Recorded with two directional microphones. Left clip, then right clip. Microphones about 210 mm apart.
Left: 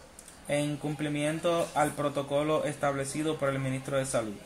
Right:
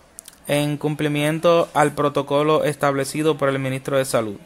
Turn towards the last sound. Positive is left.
turn(degrees=-50)  # may be behind; listen again after turning